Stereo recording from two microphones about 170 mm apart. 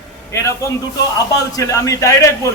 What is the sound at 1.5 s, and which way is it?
Speech, 20° left (ahead or behind).